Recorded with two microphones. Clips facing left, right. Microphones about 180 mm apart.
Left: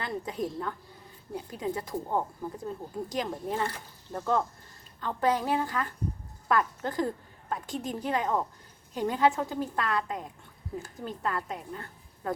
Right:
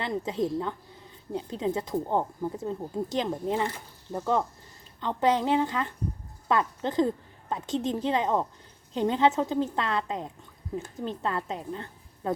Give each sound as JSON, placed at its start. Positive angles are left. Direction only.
{"t": 0.0, "sound": "a woman's voice", "side_deg": -25}